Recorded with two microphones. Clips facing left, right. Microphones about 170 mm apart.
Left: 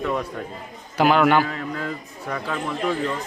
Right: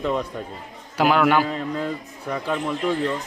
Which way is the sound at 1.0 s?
5° right (ahead or behind).